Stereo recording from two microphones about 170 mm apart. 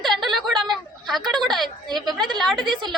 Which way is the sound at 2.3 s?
25° right (ahead or behind).